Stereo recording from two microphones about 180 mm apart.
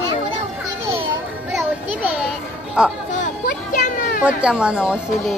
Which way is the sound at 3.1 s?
45° left (ahead or behind).